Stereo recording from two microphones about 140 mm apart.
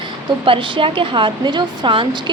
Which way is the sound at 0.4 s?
40° right (ahead or behind).